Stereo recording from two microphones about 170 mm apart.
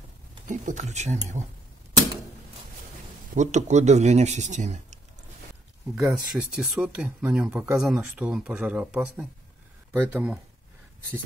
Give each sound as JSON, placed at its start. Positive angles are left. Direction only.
{"t": 0.5, "sound": "speech", "side_deg": -45}
{"t": 3.3, "sound": "speech", "side_deg": -45}
{"t": 5.9, "sound": "speech", "side_deg": -5}